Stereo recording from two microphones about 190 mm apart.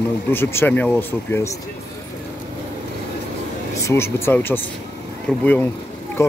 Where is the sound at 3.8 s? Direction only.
15° left (ahead or behind).